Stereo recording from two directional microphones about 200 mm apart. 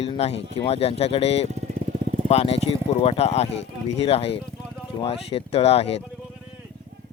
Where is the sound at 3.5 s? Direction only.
65° left (ahead or behind).